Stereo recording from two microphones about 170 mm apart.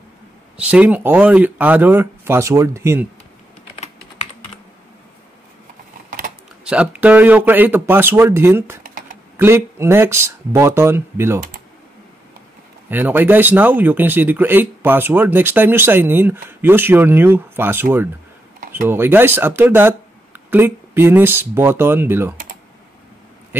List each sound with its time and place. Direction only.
0.6 s speech: 5° right (ahead or behind)
6.6 s speech: 5° right (ahead or behind)
8.8 s typing: 55° right (ahead or behind)
9.4 s speech: 15° right (ahead or behind)
12.9 s speech: 10° right (ahead or behind)